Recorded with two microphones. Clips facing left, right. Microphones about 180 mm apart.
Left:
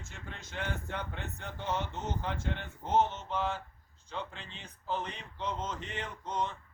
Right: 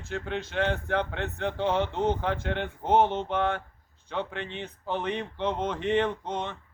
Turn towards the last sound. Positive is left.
turn(degrees=-60)  # may be behind; listen again after turning